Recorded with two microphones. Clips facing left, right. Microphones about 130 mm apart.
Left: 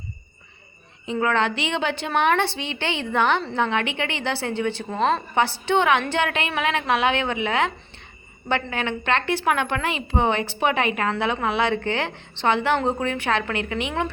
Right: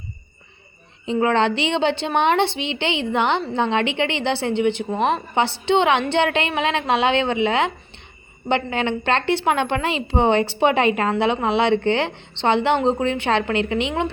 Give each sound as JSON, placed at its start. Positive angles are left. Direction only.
{"t": 1.0, "sound": "a woman's voice", "side_deg": -25}